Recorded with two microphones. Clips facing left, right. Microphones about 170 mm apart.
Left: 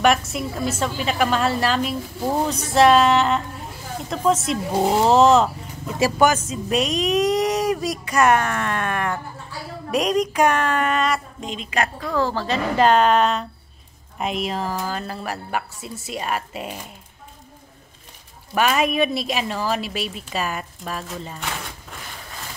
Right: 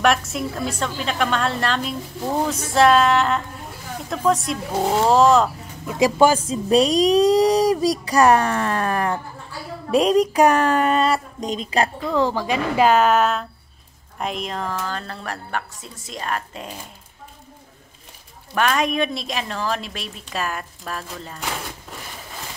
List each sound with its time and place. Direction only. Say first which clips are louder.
0.0 s a woman's voice: left 1 dB; centre (ahead or behind)
5.9 s a woman's voice: right 3 dB; 20° right (ahead or behind)
6.2 s speech: right 1 dB; 30° right (ahead or behind)
12.1 s a woman's voice: right 2 dB; 15° right (ahead or behind); by 16.8 s 10° left (ahead or behind)
18.5 s a woman's voice: left 1 dB; 5° left (ahead or behind)